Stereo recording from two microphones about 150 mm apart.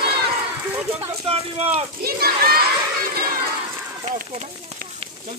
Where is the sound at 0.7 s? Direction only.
15° right (ahead or behind).